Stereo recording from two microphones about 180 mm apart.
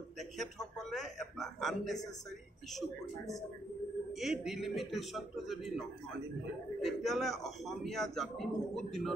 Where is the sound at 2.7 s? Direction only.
Centre (ahead or behind).